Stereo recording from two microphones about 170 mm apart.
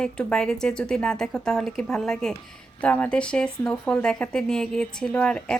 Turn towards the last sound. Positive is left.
turn(degrees=5)  # may be behind; listen again after turning